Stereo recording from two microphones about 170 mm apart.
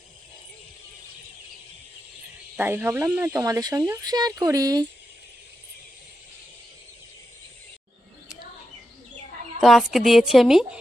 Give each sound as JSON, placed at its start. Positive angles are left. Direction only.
{"t": 2.6, "sound": "speech", "side_deg": -10}
{"t": 9.6, "sound": "a woman's voice", "side_deg": 0}